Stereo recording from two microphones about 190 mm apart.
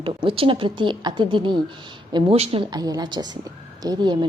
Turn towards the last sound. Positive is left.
turn(degrees=-20)  # may be behind; listen again after turning